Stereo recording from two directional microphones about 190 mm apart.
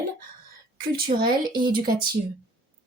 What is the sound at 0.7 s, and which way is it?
Speech, 50° right (ahead or behind).